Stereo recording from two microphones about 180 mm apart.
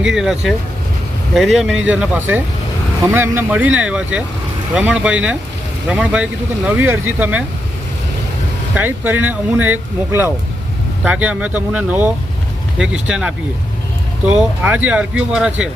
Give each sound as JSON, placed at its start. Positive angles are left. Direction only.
{"t": 0.0, "sound": "speech", "side_deg": -5}
{"t": 8.7, "sound": "speech", "side_deg": -10}